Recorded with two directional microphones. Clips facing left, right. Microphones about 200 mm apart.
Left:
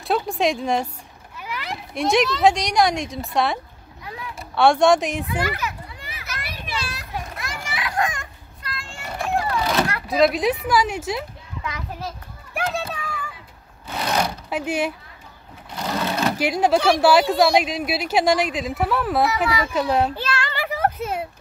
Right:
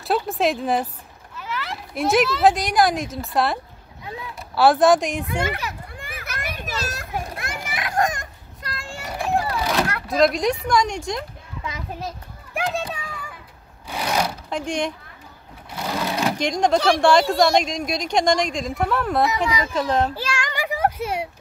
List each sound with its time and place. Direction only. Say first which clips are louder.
0.0 s speech: even; centre (ahead or behind)
1.3 s a sound: right 1 dB; 15° left (ahead or behind)
2.0 s speech: even; centre (ahead or behind)
5.9 s children playing: right 2 dB; 50° right (ahead or behind)
7.6 s a sound: right 2 dB; 50° right (ahead or behind)
9.6 s speech: left 1 dB; centre (ahead or behind)
11.6 s a child's voice: even; 20° right (ahead or behind)
12.5 s children playing: right 1 dB; 15° right (ahead or behind)
13.8 s sewing machine: even; 10° right (ahead or behind)
14.5 s speech: left 1 dB; 5° left (ahead or behind)
15.7 s sewing machine: left 1 dB; 5° right (ahead or behind)
16.3 s speech: left 1 dB; 5° left (ahead or behind)
20.2 s a sound: left 1 dB; 10° right (ahead or behind)